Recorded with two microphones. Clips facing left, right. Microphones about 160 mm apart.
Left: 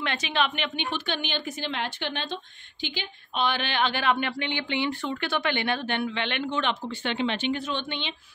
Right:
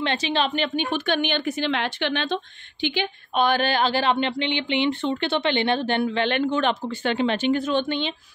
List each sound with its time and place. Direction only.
0.0 s a woman's voice: 30° right (ahead or behind)